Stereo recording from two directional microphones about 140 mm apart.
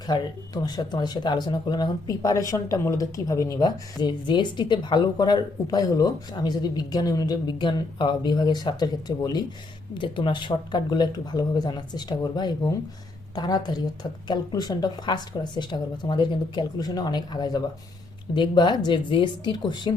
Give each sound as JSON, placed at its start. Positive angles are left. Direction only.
{"t": 0.1, "sound": "speech", "side_deg": 30}